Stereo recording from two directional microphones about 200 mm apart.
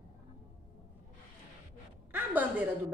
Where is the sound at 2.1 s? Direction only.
10° right (ahead or behind).